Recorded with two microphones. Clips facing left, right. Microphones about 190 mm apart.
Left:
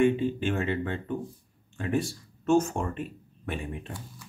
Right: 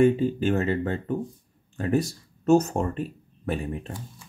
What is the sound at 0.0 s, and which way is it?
Speech, 40° right (ahead or behind).